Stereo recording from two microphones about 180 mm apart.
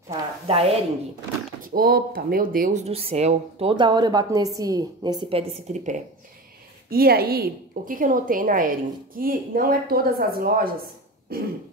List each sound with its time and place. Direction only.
0.5 s speech: 35° right (ahead or behind)
1.6 s speech: 55° right (ahead or behind); by 5.9 s 35° right (ahead or behind)
6.9 s a woman's voice: 55° right (ahead or behind)
11.3 s throat clearing: 55° right (ahead or behind)